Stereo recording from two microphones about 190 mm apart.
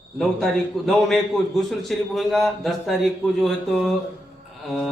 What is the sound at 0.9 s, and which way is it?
A man's voice, centre (ahead or behind).